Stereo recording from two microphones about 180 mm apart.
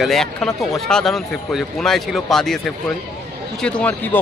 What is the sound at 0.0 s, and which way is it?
Speech, centre (ahead or behind).